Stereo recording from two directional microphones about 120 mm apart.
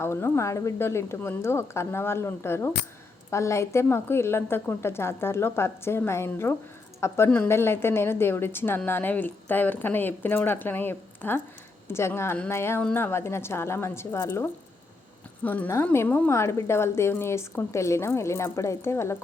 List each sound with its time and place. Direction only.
0.0 s a woman's voice: 20° left (ahead or behind)